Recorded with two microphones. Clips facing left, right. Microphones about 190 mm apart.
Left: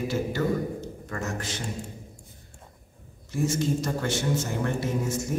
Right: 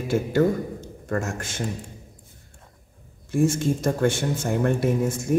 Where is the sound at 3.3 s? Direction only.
50° right (ahead or behind).